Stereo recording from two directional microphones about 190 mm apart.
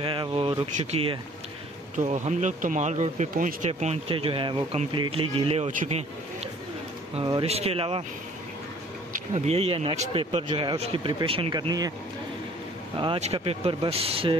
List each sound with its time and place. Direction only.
0.0 s speech: 25° right (ahead or behind)
2.0 s speech: 40° right (ahead or behind)
9.1 s speech: 35° right (ahead or behind); by 11.9 s 20° right (ahead or behind)
12.9 s speech: 30° right (ahead or behind)